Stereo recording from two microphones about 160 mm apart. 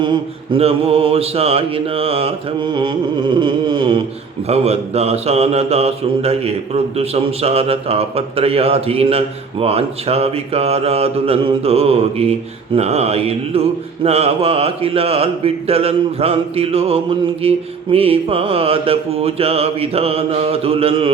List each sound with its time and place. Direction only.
0.0 s mantra: 35° right (ahead or behind)
4.4 s mantra: 40° right (ahead or behind)